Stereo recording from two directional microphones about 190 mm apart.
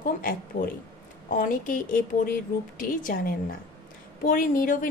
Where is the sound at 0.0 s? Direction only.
45° left (ahead or behind).